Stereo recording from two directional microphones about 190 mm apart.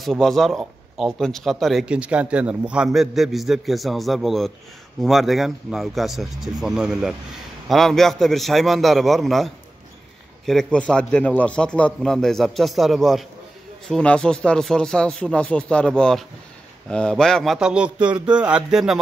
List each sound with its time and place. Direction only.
0.0 s speech: centre (ahead or behind)